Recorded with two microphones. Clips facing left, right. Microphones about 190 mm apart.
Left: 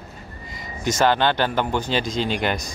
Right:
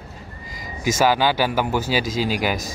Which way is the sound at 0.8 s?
5° right (ahead or behind).